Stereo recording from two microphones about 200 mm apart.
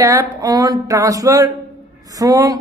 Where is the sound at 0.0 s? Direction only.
15° right (ahead or behind).